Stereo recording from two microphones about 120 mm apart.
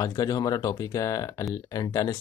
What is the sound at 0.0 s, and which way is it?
Speech, 30° left (ahead or behind).